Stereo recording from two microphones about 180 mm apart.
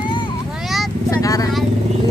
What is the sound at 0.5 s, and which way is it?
Vehicle, centre (ahead or behind).